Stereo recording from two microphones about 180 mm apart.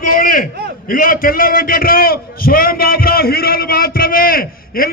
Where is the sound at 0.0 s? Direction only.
50° left (ahead or behind).